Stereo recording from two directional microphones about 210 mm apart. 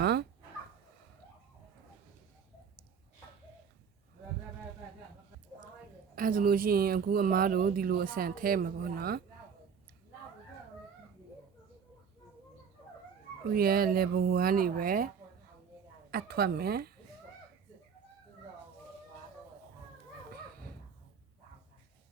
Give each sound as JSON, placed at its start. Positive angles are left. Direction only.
{"t": 0.0, "sound": "dog", "side_deg": -50}
{"t": 6.1, "sound": "speech", "side_deg": -40}
{"t": 13.5, "sound": "speech", "side_deg": -45}
{"t": 16.1, "sound": "speech", "side_deg": -45}